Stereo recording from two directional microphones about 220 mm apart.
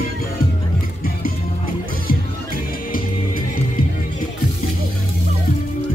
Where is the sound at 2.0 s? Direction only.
40° left (ahead or behind).